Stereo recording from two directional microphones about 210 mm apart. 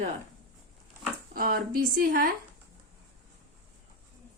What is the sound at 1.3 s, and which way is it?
A woman's voice, 45° right (ahead or behind).